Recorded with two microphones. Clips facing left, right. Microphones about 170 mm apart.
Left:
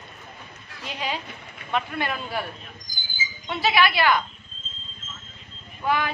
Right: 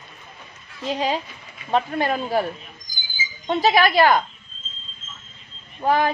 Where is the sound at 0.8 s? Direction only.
35° right (ahead or behind).